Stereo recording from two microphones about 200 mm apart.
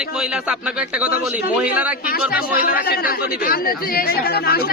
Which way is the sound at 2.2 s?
50° left (ahead or behind).